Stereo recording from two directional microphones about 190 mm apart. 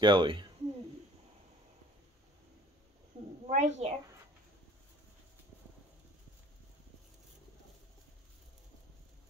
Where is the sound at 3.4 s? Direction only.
35° right (ahead or behind).